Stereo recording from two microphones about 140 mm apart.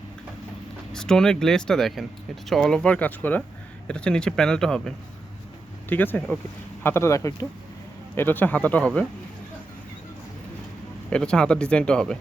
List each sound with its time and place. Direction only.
0.9 s speech: 5° left (ahead or behind)
11.1 s speech: 5° left (ahead or behind)